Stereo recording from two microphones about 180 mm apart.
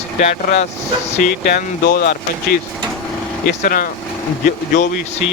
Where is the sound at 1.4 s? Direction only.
60° left (ahead or behind).